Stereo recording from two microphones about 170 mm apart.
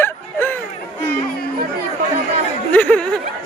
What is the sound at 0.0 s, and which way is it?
Bow-wow, 10° left (ahead or behind).